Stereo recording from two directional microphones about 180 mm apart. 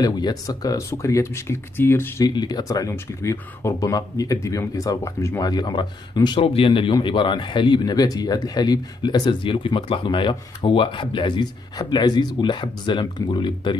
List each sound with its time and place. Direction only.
0.0 s speech: 20° left (ahead or behind)